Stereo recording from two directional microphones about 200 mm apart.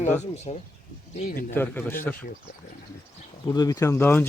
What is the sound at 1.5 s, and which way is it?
Speech, 10° left (ahead or behind).